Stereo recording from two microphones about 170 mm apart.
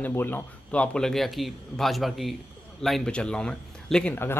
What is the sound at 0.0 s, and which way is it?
A man's voice, 10° left (ahead or behind).